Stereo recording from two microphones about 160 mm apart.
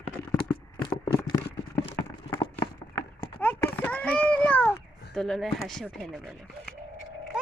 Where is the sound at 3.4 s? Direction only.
10° left (ahead or behind).